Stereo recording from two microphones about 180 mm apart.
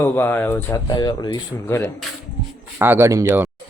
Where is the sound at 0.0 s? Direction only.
15° left (ahead or behind).